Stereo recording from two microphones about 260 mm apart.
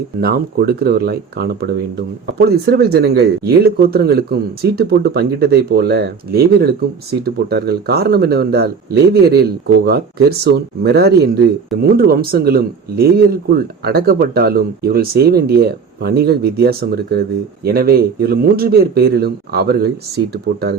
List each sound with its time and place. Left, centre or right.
0.2 s speech: right